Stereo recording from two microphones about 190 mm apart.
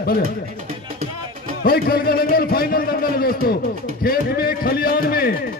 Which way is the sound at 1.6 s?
50° left (ahead or behind).